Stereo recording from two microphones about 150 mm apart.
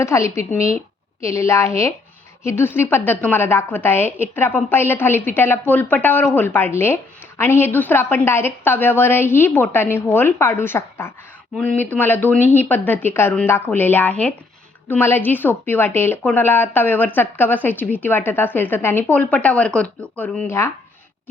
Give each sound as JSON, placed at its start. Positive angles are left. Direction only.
{"t": 0.0, "sound": "a woman's voice", "side_deg": 20}